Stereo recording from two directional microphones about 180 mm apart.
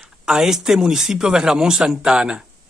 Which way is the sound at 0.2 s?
5° right (ahead or behind).